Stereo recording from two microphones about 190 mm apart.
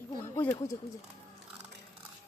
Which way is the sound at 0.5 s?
15° left (ahead or behind).